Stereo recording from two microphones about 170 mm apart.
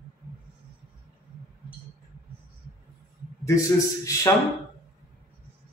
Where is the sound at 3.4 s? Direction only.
20° left (ahead or behind).